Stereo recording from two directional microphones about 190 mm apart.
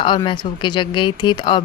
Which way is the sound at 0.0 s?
25° left (ahead or behind).